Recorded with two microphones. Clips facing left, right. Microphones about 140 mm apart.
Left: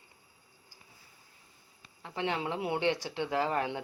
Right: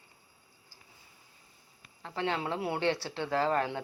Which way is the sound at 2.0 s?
15° left (ahead or behind).